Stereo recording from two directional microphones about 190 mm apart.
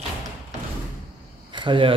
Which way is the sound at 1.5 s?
25° right (ahead or behind).